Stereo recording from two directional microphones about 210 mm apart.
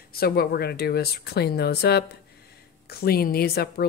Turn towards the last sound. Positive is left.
turn(degrees=45)  # may be behind; listen again after turning